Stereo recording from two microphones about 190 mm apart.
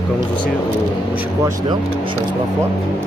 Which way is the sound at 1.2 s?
15° right (ahead or behind).